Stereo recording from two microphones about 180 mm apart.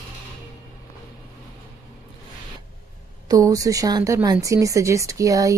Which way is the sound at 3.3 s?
20° right (ahead or behind).